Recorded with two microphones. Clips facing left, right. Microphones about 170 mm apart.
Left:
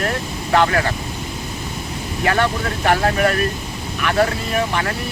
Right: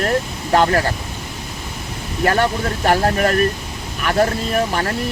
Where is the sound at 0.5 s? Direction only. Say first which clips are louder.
Right 1 dB; 35° right (ahead or behind).